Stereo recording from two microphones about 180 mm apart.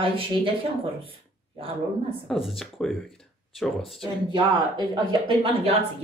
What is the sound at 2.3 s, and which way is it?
Speech, centre (ahead or behind).